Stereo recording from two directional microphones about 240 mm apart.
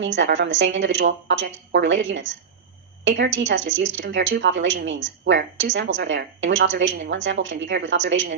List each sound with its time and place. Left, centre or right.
0.0 s speech: right